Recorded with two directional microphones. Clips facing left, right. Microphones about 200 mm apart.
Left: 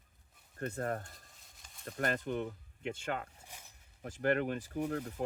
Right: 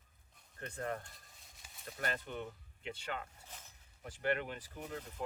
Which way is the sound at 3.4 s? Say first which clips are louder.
Left 1 dB; 10° left (ahead or behind).